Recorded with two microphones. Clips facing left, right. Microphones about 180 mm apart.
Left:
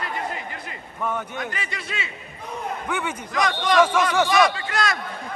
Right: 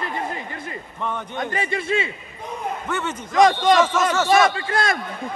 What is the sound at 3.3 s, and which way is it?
Speech, 25° right (ahead or behind).